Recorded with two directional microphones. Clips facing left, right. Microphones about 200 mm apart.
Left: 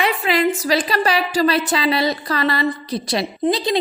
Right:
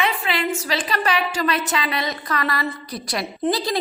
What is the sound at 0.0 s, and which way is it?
A woman's voice, 40° left (ahead or behind).